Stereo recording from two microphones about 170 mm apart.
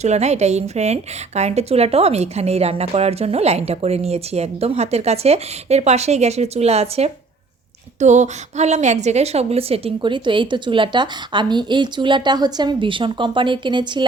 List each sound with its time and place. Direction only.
0.0 s a woman's voice: 40° right (ahead or behind)